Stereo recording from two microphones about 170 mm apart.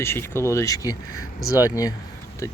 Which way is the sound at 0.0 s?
15° left (ahead or behind).